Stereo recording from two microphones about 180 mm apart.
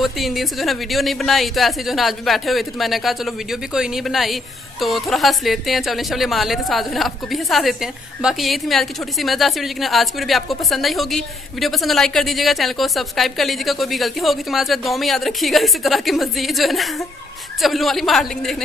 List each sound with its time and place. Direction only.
0.0 s speech: centre (ahead or behind)